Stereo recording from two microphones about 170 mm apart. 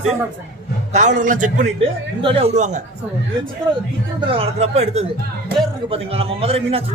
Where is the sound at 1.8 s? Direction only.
35° right (ahead or behind).